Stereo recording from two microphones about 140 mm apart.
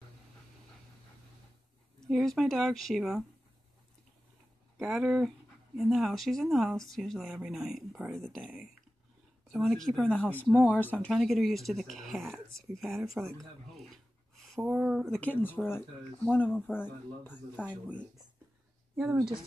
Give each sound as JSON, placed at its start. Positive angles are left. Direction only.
{"t": 2.0, "sound": "speech", "side_deg": 0}
{"t": 4.7, "sound": "speech", "side_deg": 0}
{"t": 13.2, "sound": "speech", "side_deg": -20}
{"t": 13.7, "sound": "a sound", "side_deg": 0}
{"t": 14.7, "sound": "speech", "side_deg": -5}
{"t": 15.1, "sound": "speech", "side_deg": 10}
{"t": 18.9, "sound": "speech", "side_deg": -15}